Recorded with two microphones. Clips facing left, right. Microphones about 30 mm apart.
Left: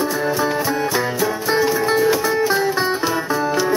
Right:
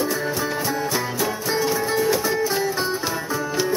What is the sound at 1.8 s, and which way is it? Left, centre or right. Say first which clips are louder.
Music: left 4 dB; left.